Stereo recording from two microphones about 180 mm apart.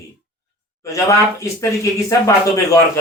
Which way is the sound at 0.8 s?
15° left (ahead or behind).